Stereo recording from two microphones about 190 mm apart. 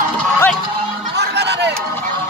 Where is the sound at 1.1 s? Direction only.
60° right (ahead or behind).